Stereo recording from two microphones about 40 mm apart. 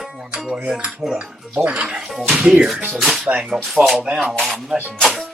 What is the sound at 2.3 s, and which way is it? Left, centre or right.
Music, right.